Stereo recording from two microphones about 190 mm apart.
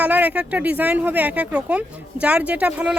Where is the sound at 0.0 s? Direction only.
10° right (ahead or behind).